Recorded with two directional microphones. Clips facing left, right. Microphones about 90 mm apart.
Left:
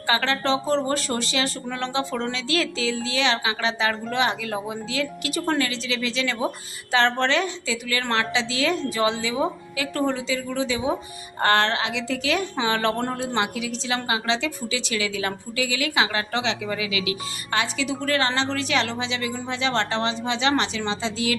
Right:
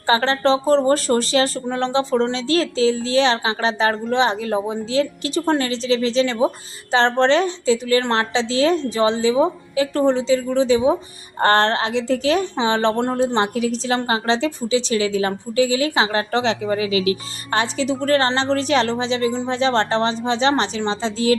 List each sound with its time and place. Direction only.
0.1 s a woman's voice: 35° right (ahead or behind)